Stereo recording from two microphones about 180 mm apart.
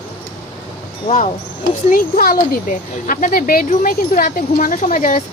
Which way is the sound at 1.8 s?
50° left (ahead or behind).